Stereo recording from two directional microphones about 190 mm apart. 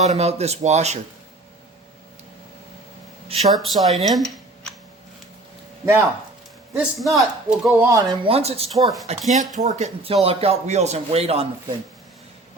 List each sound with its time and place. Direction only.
0.0 s speech: 35° right (ahead or behind)
3.5 s speech: centre (ahead or behind)
5.8 s speech: 10° right (ahead or behind)
6.7 s a man's voice: centre (ahead or behind)
7.8 s speech: 15° right (ahead or behind)
8.2 s speech: 30° right (ahead or behind)